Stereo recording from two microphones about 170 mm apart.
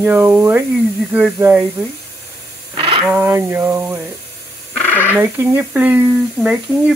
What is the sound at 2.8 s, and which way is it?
Radio, 30° right (ahead or behind).